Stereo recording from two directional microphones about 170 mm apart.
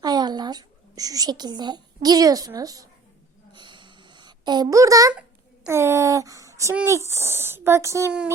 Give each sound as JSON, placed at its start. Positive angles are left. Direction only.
{"t": 0.0, "sound": "a woman's voice", "side_deg": -25}
{"t": 3.5, "sound": "a sound", "side_deg": -25}
{"t": 5.6, "sound": "speech", "side_deg": -15}